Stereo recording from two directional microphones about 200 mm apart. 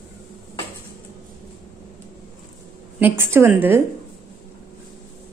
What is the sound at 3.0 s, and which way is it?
Speech, 10° right (ahead or behind).